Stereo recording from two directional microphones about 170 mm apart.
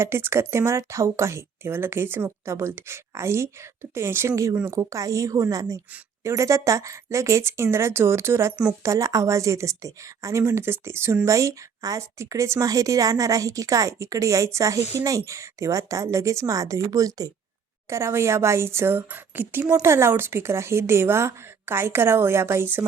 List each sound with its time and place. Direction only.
0.0 s a woman's voice: 15° right (ahead or behind)